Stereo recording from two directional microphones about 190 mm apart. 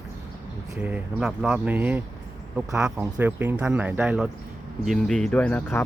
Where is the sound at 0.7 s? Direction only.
10° right (ahead or behind).